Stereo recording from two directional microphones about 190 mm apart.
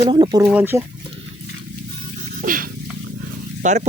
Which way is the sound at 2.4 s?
45° right (ahead or behind).